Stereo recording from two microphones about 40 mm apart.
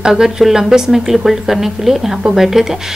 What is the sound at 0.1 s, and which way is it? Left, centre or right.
Speech, centre.